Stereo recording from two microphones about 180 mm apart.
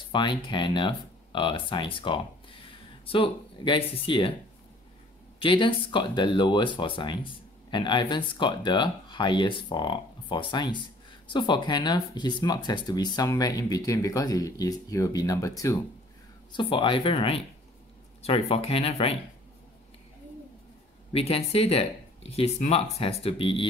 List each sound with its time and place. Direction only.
0.1 s speech: 25° left (ahead or behind)
5.4 s speech: 30° left (ahead or behind)
16.5 s speech: 30° left (ahead or behind)
21.1 s speech: 35° left (ahead or behind)